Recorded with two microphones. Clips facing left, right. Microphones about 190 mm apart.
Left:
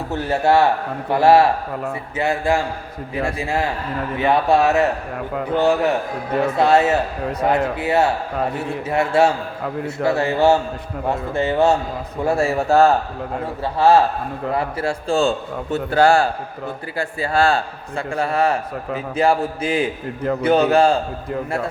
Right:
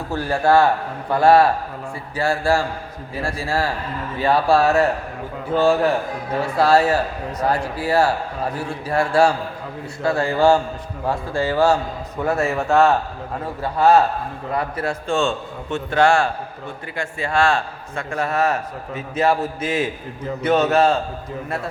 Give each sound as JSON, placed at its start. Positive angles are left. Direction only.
{"t": 0.1, "sound": "a man's voice", "side_deg": 20}